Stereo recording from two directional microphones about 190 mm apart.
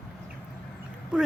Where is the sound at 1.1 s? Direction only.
5° right (ahead or behind).